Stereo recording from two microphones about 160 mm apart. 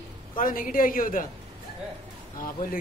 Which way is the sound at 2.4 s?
60° left (ahead or behind).